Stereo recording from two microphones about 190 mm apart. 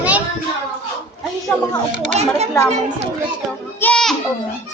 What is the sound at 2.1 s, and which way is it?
Speech, 35° right (ahead or behind).